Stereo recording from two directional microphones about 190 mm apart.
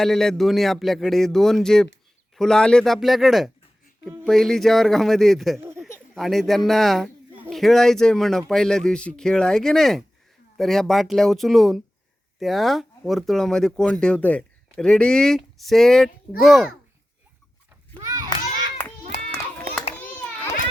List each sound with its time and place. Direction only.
0.0 s a man's voice: centre (ahead or behind)
17.9 s children playing: 20° right (ahead or behind)